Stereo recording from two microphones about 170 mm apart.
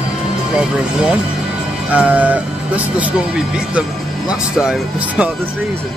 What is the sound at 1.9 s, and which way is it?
Speech, 10° right (ahead or behind).